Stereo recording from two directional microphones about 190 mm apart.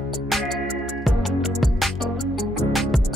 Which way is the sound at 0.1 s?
Centre (ahead or behind).